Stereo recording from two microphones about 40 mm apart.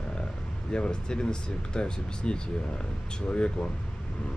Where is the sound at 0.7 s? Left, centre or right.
Left.